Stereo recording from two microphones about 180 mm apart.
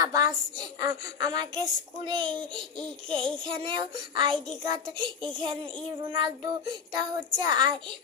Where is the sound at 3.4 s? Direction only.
30° right (ahead or behind).